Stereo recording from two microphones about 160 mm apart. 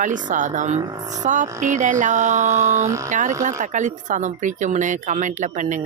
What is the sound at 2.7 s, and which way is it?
Speech, 20° right (ahead or behind).